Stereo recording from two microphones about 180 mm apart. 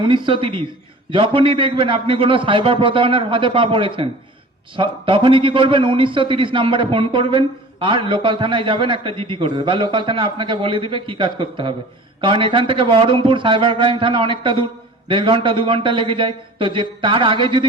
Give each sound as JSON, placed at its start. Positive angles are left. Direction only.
{"t": 0.0, "sound": "a man's voice", "side_deg": -30}